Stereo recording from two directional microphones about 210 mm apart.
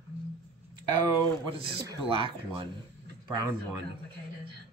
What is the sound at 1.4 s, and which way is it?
Speech, 25° right (ahead or behind).